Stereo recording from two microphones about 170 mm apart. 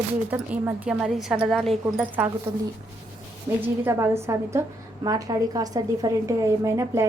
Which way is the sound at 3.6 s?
15° right (ahead or behind).